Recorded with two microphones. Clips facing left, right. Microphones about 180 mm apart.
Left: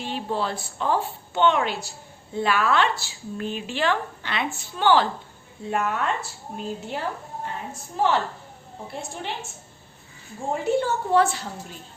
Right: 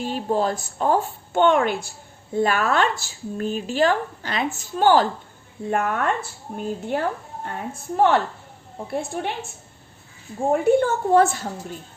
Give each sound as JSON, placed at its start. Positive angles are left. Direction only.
{"t": 0.0, "sound": "a woman's voice", "side_deg": -45}
{"t": 10.5, "sound": "speech", "side_deg": -55}